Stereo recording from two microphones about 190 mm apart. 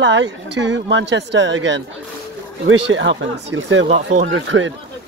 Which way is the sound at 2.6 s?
80° right.